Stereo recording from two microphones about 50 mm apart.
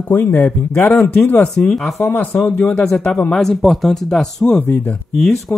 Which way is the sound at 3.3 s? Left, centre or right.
Centre.